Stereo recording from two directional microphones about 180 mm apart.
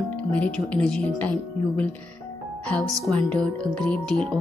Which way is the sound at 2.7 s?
5° left (ahead or behind).